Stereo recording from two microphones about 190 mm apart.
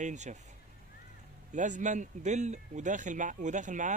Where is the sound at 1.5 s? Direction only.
40° right (ahead or behind).